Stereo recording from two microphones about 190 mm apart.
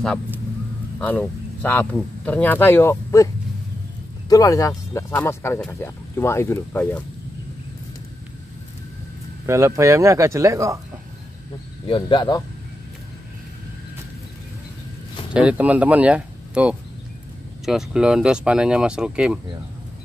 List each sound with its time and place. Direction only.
0.9 s speech: 5° left (ahead or behind)
4.3 s speech: 20° left (ahead or behind)
9.5 s speech: 15° right (ahead or behind)
11.9 s speech: 25° left (ahead or behind)
15.3 s speech: 5° right (ahead or behind)